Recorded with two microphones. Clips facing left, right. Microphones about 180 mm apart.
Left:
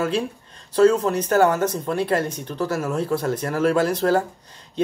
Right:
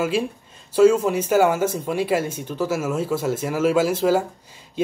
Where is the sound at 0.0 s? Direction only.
5° right (ahead or behind).